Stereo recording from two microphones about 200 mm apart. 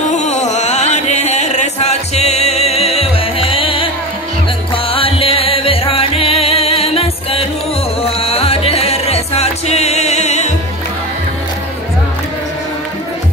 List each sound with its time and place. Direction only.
0.1 s music: 35° left (ahead or behind)
4.9 s music: 30° left (ahead or behind)